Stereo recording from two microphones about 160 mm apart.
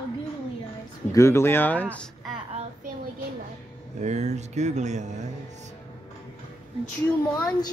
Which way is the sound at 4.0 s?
45° right (ahead or behind).